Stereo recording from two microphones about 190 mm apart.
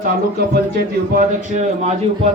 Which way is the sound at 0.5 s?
55° right (ahead or behind).